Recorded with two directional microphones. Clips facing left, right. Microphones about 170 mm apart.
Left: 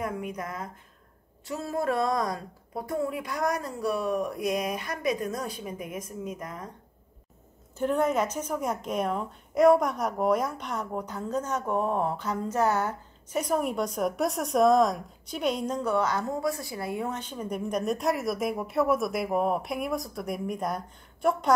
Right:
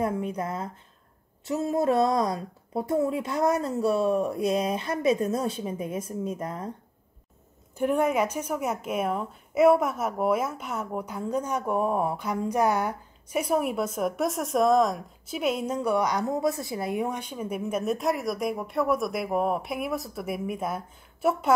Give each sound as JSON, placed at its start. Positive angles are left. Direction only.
{"t": 0.0, "sound": "a woman's voice", "side_deg": -30}
{"t": 7.7, "sound": "a woman's voice", "side_deg": -10}